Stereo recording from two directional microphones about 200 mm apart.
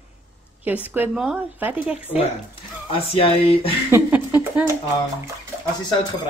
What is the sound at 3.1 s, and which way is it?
Speech, 30° left (ahead or behind).